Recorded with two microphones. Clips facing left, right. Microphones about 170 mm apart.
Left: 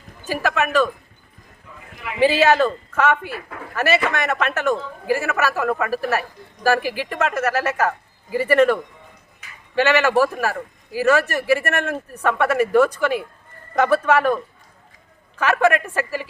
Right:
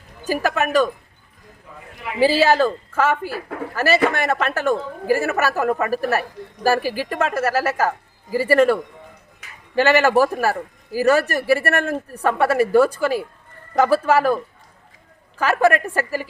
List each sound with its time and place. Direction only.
0.3 s speech: 40° right (ahead or behind)
2.0 s speech: 35° right (ahead or behind)